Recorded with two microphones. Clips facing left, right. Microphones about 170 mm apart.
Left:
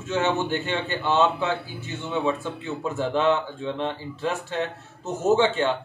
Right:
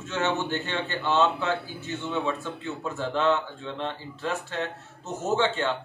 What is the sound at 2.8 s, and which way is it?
Speech, 15° left (ahead or behind).